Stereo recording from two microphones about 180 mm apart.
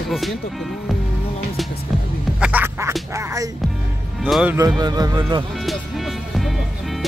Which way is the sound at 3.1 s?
15° right (ahead or behind).